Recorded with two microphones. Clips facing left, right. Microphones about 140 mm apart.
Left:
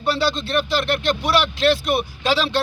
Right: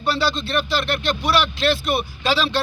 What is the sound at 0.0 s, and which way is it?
A man's voice, 20° left (ahead or behind).